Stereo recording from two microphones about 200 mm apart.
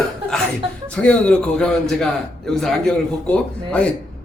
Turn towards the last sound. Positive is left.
turn(degrees=5)  # may be behind; listen again after turning